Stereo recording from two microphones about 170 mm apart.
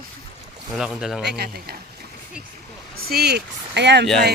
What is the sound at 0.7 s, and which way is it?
Speech, centre (ahead or behind).